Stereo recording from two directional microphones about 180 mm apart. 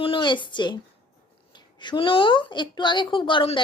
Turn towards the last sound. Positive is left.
turn(degrees=25)  # may be behind; listen again after turning